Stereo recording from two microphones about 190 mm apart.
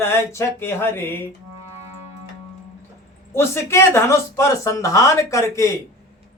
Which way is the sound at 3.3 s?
15° left (ahead or behind).